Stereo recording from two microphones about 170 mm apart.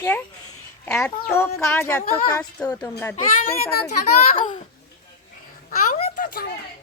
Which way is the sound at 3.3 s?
60° left (ahead or behind).